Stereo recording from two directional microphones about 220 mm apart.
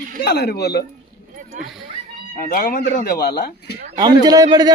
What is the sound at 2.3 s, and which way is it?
Speech, 40° left (ahead or behind).